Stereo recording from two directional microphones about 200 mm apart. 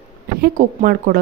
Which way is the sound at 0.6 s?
40° right (ahead or behind).